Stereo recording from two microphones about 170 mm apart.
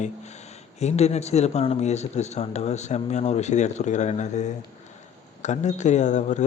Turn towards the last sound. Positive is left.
turn(degrees=45)  # may be behind; listen again after turning